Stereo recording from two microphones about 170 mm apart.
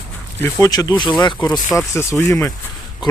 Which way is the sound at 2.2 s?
15° left (ahead or behind).